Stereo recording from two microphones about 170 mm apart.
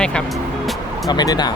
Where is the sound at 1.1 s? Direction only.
25° left (ahead or behind).